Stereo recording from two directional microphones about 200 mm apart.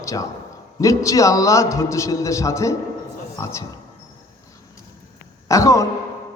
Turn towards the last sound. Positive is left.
turn(degrees=15)  # may be behind; listen again after turning